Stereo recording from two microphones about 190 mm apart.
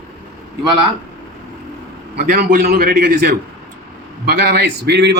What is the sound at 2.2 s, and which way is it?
A man's voice, 45° right (ahead or behind).